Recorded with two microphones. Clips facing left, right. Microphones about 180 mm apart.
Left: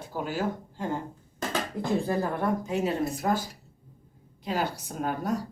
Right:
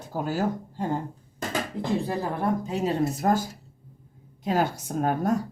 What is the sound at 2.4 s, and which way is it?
Speech, 35° right (ahead or behind).